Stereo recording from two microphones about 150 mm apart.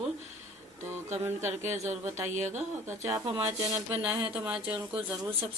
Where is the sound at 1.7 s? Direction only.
50° right (ahead or behind).